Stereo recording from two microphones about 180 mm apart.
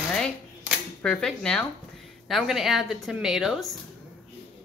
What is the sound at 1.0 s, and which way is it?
Speech, 5° left (ahead or behind).